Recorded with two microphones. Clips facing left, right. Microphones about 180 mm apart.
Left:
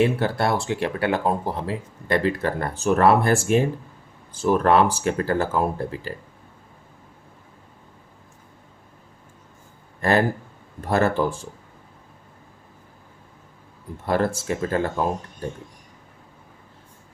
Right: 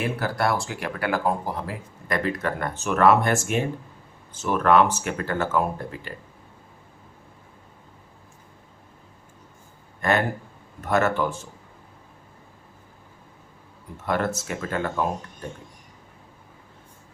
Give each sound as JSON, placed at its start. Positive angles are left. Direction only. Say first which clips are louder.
{"t": 0.0, "sound": "speech", "louder": "left 4 dB", "side_deg": 25}
{"t": 10.0, "sound": "speech", "louder": "left 3 dB", "side_deg": 35}
{"t": 14.0, "sound": "speech", "louder": "left 3 dB", "side_deg": 30}